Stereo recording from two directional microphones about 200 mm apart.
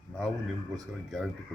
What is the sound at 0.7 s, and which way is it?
Speech, centre (ahead or behind).